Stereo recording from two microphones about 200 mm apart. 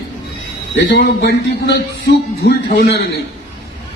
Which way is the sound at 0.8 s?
55° left (ahead or behind).